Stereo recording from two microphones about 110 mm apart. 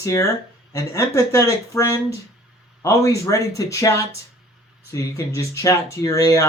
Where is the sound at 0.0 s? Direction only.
30° left (ahead or behind).